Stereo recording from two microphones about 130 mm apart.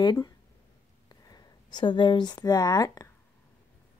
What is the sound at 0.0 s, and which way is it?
Speech, 35° left (ahead or behind).